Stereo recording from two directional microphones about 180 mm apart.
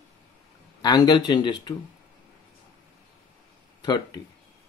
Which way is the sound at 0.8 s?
25° left (ahead or behind).